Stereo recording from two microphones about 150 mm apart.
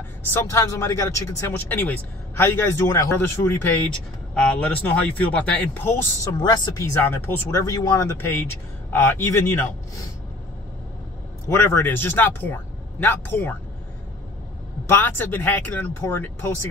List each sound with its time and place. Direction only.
0.3 s a man's voice: 20° left (ahead or behind)
6.3 s a man's voice: 30° left (ahead or behind)
11.4 s a man's voice: 15° left (ahead or behind)
14.9 s a man's voice: 10° left (ahead or behind)